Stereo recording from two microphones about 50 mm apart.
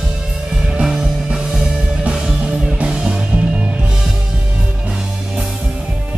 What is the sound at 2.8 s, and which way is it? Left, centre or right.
Music, centre.